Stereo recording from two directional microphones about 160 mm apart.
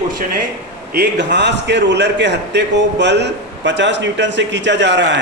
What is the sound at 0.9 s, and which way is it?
A man's voice, 90° right.